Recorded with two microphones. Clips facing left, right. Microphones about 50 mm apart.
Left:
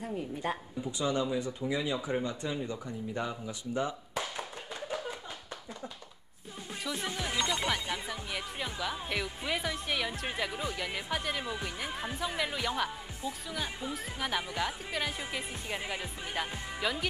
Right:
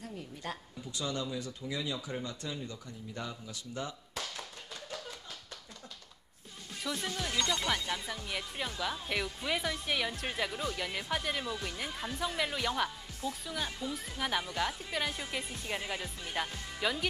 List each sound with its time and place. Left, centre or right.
0.0 s speech: left
6.8 s speech: centre
7.1 s speech: centre
11.4 s speech: centre